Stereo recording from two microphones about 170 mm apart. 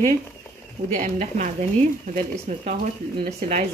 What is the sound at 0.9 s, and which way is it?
Speech, 40° right (ahead or behind).